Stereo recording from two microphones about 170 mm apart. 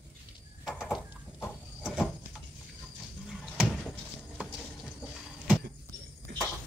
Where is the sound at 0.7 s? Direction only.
Centre (ahead or behind).